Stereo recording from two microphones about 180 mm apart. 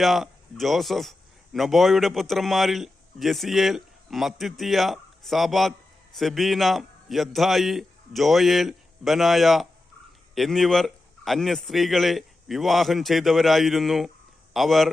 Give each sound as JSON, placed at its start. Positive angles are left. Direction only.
{"t": 0.0, "sound": "a man's voice", "side_deg": 0}